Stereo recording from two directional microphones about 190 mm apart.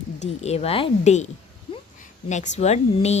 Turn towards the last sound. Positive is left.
turn(degrees=35)  # may be behind; listen again after turning